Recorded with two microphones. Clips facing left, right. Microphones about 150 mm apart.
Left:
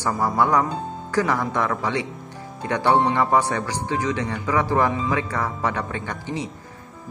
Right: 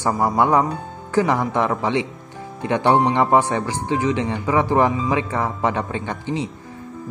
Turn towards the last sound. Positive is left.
turn(degrees=-20)  # may be behind; listen again after turning